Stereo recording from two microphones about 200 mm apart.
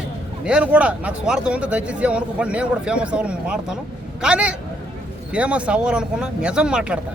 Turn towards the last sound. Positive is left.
turn(degrees=-5)  # may be behind; listen again after turning